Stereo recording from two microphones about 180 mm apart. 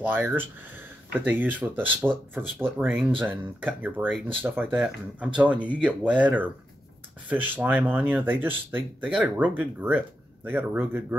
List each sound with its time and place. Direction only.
0.0 s speech: 10° right (ahead or behind)